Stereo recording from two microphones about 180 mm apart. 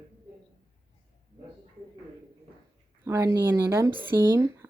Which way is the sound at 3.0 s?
15° right (ahead or behind).